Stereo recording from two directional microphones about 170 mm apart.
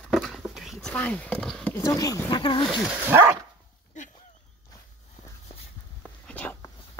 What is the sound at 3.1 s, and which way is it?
Dog, 10° right (ahead or behind).